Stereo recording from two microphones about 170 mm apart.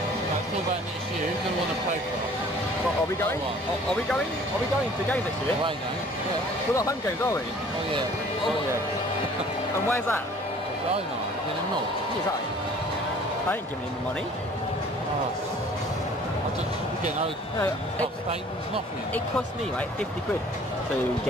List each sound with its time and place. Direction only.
6.7 s speech: 20° left (ahead or behind)
9.8 s speech: 15° left (ahead or behind)